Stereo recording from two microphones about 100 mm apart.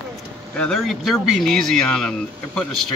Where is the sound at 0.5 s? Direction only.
10° left (ahead or behind).